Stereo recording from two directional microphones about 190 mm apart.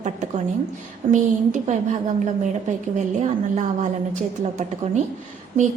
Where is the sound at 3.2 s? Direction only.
40° right (ahead or behind).